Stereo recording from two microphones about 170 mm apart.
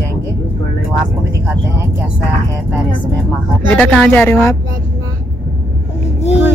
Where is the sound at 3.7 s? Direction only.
5° left (ahead or behind).